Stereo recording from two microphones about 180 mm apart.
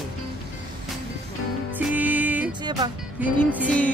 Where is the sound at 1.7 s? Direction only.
10° right (ahead or behind).